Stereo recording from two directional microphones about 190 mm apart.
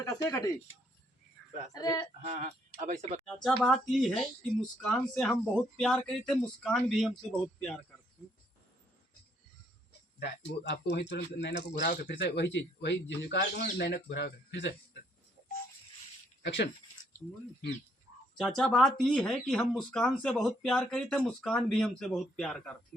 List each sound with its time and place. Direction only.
0.0 s speech: 15° left (ahead or behind)
1.7 s speech: 20° left (ahead or behind)
2.2 s speech: 40° right (ahead or behind)
3.2 s speech: 5° left (ahead or behind)
10.2 s speech: 60° left (ahead or behind)
16.4 s speech: 65° left (ahead or behind)
18.3 s speech: 5° left (ahead or behind)